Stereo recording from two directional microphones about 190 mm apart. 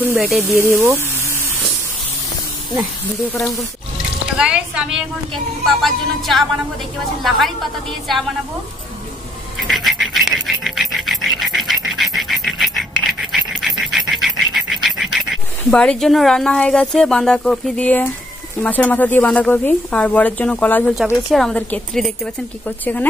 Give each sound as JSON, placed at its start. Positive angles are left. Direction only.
{"t": 0.0, "sound": "speech", "side_deg": -10}
{"t": 3.3, "sound": "speech", "side_deg": 15}
{"t": 4.4, "sound": "a woman's voice", "side_deg": -5}
{"t": 9.7, "sound": "dog", "side_deg": 0}
{"t": 18.6, "sound": "speech", "side_deg": 10}